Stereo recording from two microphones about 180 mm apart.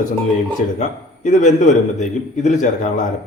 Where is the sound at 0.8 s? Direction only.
40° left (ahead or behind).